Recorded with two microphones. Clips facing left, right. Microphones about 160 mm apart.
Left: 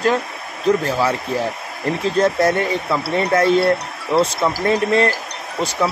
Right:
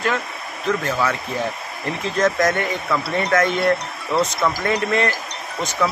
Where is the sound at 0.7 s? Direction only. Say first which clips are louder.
Left 4 dB; 30° left (ahead or behind).